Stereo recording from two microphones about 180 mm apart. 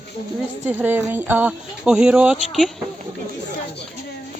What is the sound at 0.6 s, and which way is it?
Speech, 10° right (ahead or behind).